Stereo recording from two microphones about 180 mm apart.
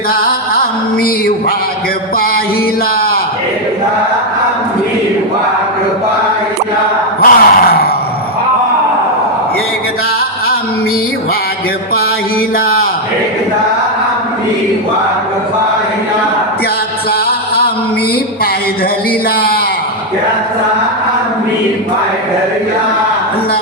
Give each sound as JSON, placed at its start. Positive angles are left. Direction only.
{"t": 0.1, "sound": "music", "side_deg": 55}
{"t": 7.2, "sound": "grunt", "side_deg": 60}